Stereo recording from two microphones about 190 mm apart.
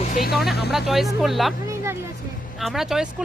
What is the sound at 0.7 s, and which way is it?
Speech, centre (ahead or behind).